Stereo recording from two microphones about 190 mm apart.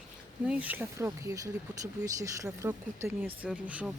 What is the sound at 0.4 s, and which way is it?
Speech, 5° right (ahead or behind).